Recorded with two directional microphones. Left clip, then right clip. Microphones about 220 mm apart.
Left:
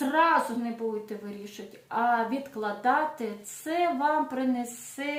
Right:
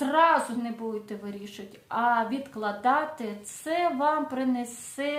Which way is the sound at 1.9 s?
25° right (ahead or behind).